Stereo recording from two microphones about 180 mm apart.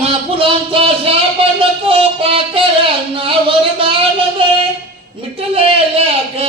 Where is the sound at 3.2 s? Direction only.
30° right (ahead or behind).